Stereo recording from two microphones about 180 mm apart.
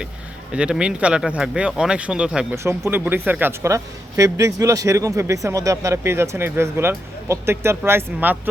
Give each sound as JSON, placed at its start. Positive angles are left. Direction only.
{"t": 0.5, "sound": "speech", "side_deg": -5}